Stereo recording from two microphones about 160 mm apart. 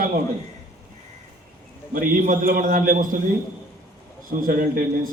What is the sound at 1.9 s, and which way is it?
A man's voice, 60° right (ahead or behind).